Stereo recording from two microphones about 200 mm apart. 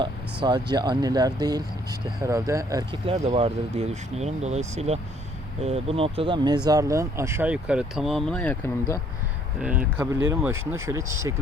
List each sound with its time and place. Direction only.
0.4 s speech: 20° right (ahead or behind)
3.1 s speech: 30° right (ahead or behind); by 9.0 s 10° left (ahead or behind)
9.6 s speech: 5° right (ahead or behind)